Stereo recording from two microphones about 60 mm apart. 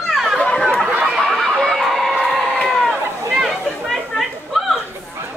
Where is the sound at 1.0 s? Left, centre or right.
Centre.